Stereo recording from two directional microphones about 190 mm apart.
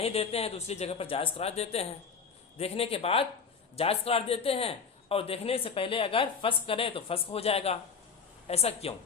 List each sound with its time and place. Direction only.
0.0 s a man's voice: 35° left (ahead or behind)